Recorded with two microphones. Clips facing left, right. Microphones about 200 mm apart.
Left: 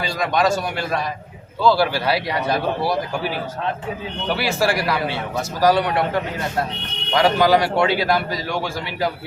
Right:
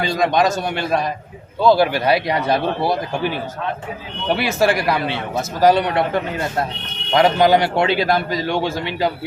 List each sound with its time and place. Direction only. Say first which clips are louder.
0.1 s a man's voice: right 1 dB; 20° right (ahead or behind)
4.4 s a man's voice: right 3 dB; 20° right (ahead or behind)
7.1 s a man's voice: right 2 dB; 20° right (ahead or behind)